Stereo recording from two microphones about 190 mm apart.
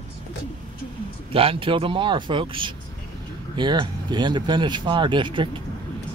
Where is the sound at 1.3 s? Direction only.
30° right (ahead or behind).